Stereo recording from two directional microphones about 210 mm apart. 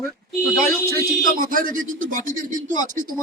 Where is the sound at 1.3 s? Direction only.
40° right (ahead or behind).